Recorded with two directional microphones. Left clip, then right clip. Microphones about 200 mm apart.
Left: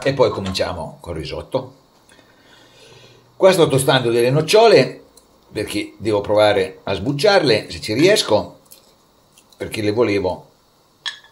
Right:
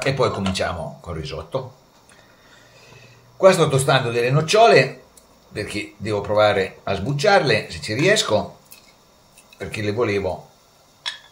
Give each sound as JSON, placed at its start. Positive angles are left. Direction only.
{"t": 0.0, "sound": "speech", "side_deg": 20}
{"t": 3.3, "sound": "speech", "side_deg": 25}
{"t": 9.6, "sound": "speech", "side_deg": 30}